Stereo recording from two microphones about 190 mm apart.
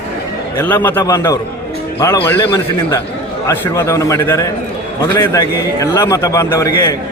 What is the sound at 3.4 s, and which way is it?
A man's voice, 15° left (ahead or behind).